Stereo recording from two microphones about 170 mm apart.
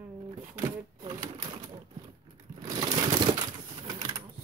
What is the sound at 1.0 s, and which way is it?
Pigeon, 25° right (ahead or behind).